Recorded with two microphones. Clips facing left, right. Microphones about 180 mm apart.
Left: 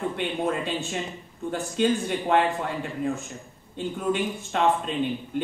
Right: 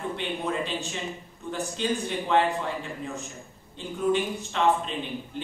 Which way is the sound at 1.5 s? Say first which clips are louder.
Left 5 dB; 55° left (ahead or behind).